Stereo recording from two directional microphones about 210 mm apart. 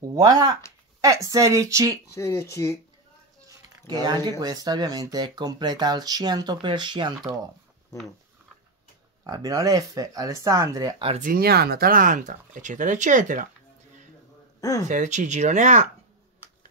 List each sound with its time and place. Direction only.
0.1 s speech: 15° right (ahead or behind)
2.1 s speech: 15° left (ahead or behind)
3.4 s a sound: 20° right (ahead or behind)
4.3 s speech: 20° right (ahead or behind)
9.2 s speech: 20° right (ahead or behind)
11.1 s speech: 40° right (ahead or behind)
14.6 s speech: 15° left (ahead or behind)
14.9 s speech: 35° right (ahead or behind)